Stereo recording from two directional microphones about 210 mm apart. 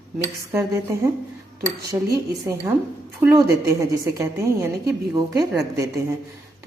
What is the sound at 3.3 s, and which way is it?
Speech, 15° right (ahead or behind).